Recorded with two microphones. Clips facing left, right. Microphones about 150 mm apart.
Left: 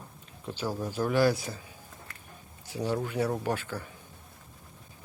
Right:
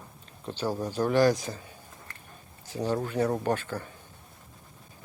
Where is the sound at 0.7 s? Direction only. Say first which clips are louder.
Right 3 dB; 15° right (ahead or behind).